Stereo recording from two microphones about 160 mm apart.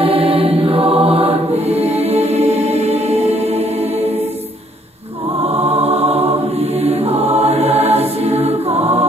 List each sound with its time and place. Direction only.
0.0 s choir: 35° right (ahead or behind)
5.4 s choir: 40° right (ahead or behind)